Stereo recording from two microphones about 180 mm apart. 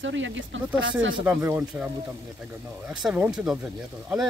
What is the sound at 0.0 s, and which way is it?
Speech, 90° right.